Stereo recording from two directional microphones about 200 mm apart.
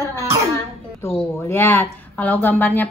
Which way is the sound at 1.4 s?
10° left (ahead or behind).